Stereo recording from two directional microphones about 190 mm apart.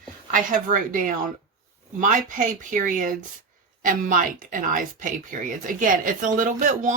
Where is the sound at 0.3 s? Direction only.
45° right (ahead or behind).